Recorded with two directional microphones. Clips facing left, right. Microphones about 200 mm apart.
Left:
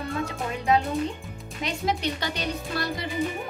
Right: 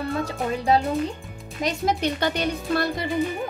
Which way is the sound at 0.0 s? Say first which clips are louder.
Right 4 dB; 35° right (ahead or behind).